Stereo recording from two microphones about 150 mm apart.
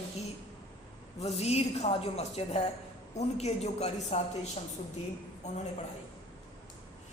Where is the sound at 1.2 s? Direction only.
45° left (ahead or behind).